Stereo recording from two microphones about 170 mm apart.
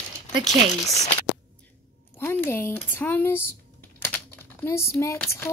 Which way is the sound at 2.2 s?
15° left (ahead or behind).